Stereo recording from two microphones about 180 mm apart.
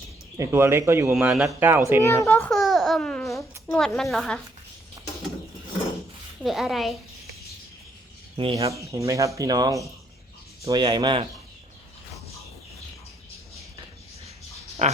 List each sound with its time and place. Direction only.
0.3 s speech: 15° right (ahead or behind)
1.1 s a woman's voice: 5° right (ahead or behind)
2.0 s babbling: 15° left (ahead or behind)
3.7 s a woman's voice: 5° left (ahead or behind)
6.4 s a woman's voice: centre (ahead or behind)
8.5 s speech: 20° right (ahead or behind)
14.8 s speech: 40° right (ahead or behind)